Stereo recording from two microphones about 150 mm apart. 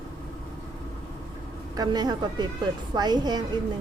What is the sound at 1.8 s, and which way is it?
Speech, 25° right (ahead or behind).